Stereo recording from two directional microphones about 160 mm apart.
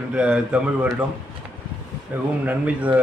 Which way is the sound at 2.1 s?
10° right (ahead or behind).